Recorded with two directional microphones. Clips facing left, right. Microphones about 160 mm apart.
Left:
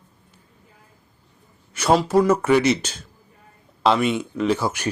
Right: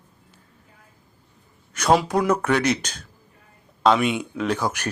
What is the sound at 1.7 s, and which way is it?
Speech, 5° left (ahead or behind).